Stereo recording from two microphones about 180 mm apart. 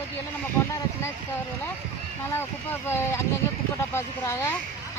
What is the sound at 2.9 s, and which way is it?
Speech, 15° left (ahead or behind).